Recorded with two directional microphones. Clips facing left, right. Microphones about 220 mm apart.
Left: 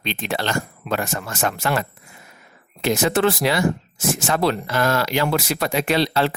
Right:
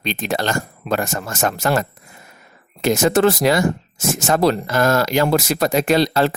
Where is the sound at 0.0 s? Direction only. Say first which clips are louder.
Right 3 dB; 40° right (ahead or behind).